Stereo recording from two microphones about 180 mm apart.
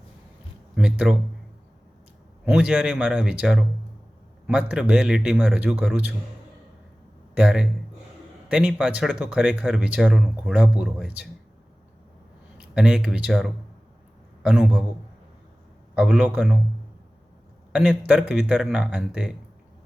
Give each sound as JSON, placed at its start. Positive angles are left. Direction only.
{"t": 0.8, "sound": "speech", "side_deg": -5}
{"t": 2.4, "sound": "speech", "side_deg": -5}
{"t": 7.3, "sound": "speech", "side_deg": -5}
{"t": 12.5, "sound": "speech", "side_deg": -5}
{"t": 16.0, "sound": "speech", "side_deg": -5}
{"t": 17.7, "sound": "speech", "side_deg": 0}